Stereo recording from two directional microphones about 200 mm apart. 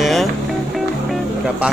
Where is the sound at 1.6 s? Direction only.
5° right (ahead or behind).